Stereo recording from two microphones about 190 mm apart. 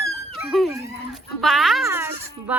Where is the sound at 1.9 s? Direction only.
10° right (ahead or behind).